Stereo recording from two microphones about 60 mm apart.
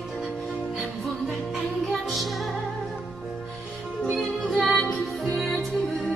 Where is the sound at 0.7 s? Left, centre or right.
Centre.